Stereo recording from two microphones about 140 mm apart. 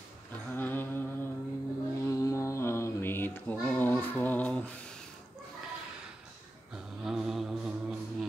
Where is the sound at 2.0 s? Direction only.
25° left (ahead or behind).